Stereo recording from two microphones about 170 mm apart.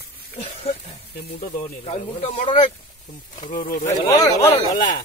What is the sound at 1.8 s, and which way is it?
Speech, 40° left (ahead or behind).